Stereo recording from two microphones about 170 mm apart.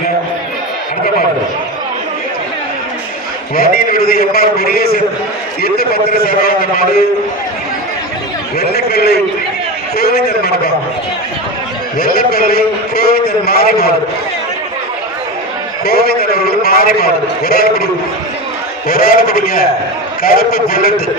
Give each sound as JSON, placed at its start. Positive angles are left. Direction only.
{"t": 3.5, "sound": "a man's voice", "side_deg": 60}
{"t": 8.5, "sound": "a man's voice", "side_deg": 70}
{"t": 11.9, "sound": "a man's voice", "side_deg": 60}
{"t": 15.9, "sound": "a man's voice", "side_deg": 65}
{"t": 18.9, "sound": "a man's voice", "side_deg": 60}